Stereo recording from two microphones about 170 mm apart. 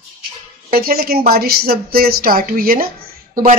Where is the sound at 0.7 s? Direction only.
60° right (ahead or behind).